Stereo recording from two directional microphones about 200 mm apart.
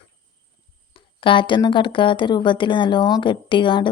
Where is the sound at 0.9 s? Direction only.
25° left (ahead or behind).